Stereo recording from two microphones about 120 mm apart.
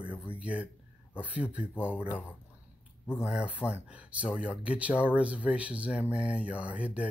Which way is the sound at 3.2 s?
5° right (ahead or behind).